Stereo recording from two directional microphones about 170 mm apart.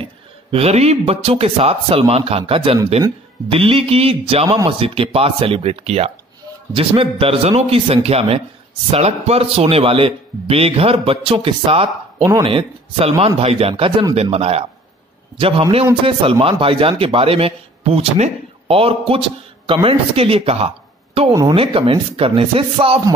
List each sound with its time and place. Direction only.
0.0 s a man's voice: 35° right (ahead or behind)
21.3 s speech: 20° right (ahead or behind)
21.5 s a man's voice: 30° right (ahead or behind)